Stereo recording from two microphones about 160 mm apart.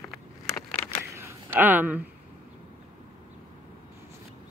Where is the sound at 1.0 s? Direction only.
15° right (ahead or behind).